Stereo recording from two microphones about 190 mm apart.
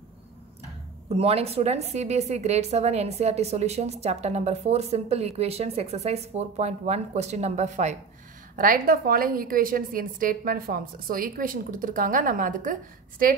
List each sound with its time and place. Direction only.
1.0 s a woman's voice: 30° right (ahead or behind)